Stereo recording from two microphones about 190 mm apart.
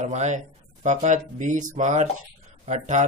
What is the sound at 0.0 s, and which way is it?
Speech, 40° right (ahead or behind).